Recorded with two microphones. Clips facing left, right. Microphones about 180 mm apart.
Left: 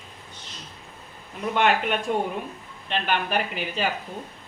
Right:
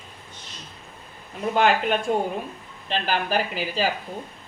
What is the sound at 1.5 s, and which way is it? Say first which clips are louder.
Speech: right 2 dB; 35° right (ahead or behind).